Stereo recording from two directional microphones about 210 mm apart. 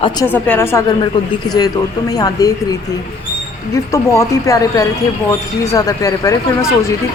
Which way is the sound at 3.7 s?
15° left (ahead or behind).